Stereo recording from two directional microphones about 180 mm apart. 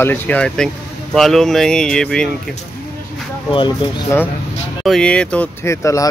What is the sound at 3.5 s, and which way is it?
Speech, 25° left (ahead or behind).